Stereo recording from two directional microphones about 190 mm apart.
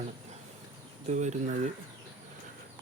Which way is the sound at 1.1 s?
40° right (ahead or behind).